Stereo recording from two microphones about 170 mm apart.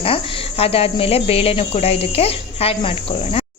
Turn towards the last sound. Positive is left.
turn(degrees=35)  # may be behind; listen again after turning